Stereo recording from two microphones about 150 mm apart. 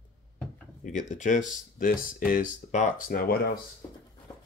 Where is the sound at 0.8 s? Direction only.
55° left (ahead or behind).